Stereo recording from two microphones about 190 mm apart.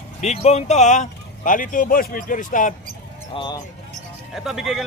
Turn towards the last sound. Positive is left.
turn(degrees=0)  # may be behind; listen again after turning